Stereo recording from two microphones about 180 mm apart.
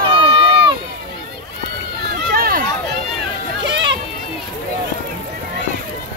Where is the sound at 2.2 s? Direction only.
55° right (ahead or behind).